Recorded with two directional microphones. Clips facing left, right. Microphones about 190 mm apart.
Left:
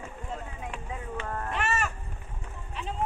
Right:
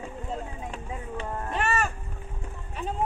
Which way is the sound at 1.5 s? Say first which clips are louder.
Right 4 dB; 35° right (ahead or behind).